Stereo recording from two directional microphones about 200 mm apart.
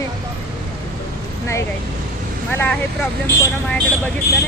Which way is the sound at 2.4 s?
10° left (ahead or behind).